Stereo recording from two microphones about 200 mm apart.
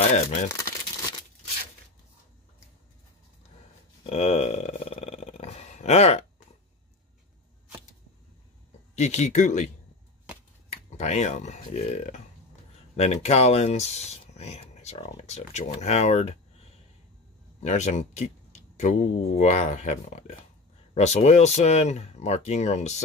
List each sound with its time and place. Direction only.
0.5 s crumpling: 15° left (ahead or behind)
4.0 s burping: 30° left (ahead or behind)
8.9 s speech: 35° left (ahead or behind)
10.7 s speech: 35° left (ahead or behind)
17.6 s speech: 35° left (ahead or behind)